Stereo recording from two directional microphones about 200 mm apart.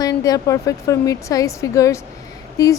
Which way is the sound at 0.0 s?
15° left (ahead or behind).